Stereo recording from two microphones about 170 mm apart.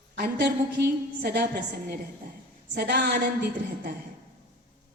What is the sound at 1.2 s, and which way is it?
Speech, 70° right (ahead or behind).